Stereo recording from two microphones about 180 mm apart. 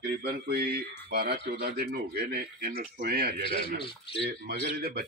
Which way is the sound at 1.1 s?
60° right (ahead or behind).